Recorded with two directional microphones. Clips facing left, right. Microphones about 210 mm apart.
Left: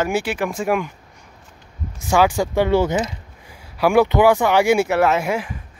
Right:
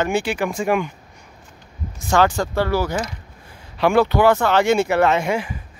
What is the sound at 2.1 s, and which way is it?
Speech, 10° left (ahead or behind).